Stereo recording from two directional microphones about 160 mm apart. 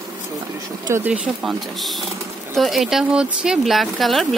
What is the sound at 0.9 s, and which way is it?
Speech, 15° right (ahead or behind).